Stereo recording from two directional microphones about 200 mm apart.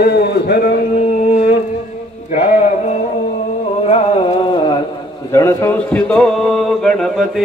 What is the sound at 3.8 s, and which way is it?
Carnatic music, 30° left (ahead or behind).